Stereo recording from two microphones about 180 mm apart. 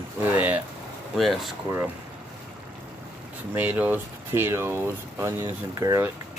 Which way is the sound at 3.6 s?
10° right (ahead or behind).